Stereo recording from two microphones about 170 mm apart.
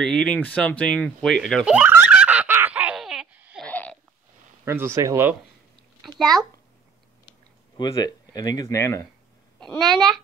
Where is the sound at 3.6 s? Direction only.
10° left (ahead or behind).